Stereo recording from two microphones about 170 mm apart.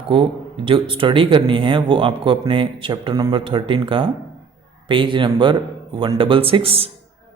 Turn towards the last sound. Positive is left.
turn(degrees=-35)  # may be behind; listen again after turning